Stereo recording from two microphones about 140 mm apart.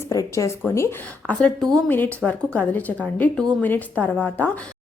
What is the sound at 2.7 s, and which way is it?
A woman's voice, 10° left (ahead or behind).